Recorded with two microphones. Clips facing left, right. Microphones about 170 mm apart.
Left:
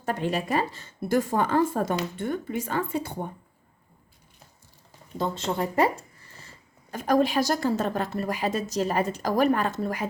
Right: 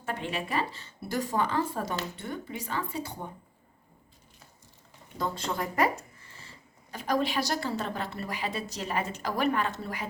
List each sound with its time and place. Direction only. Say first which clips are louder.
0.0 s a woman's voice: left 6 dB; 40° left (ahead or behind)
5.1 s speech: left 4 dB; 25° left (ahead or behind)
6.9 s a woman's voice: left 6 dB; 50° left (ahead or behind)